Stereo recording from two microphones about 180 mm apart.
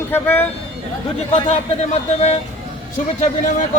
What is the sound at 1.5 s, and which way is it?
A man's voice, 40° left (ahead or behind).